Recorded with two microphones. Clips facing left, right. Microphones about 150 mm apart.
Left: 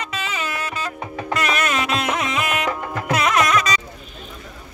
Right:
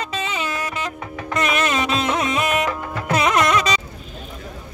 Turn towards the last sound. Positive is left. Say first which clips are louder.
# right 1 dB
turn(degrees=-30)  # may be behind; listen again after turning